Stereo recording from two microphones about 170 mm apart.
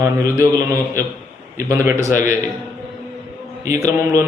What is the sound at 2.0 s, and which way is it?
Speech, 45° left (ahead or behind).